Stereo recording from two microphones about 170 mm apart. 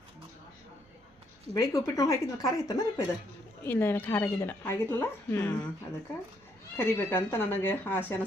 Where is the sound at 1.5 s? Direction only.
20° left (ahead or behind).